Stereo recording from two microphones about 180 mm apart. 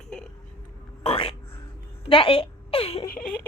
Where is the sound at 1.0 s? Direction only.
30° left (ahead or behind).